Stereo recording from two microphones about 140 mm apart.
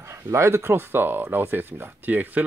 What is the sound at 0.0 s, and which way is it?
Speech, 20° right (ahead or behind).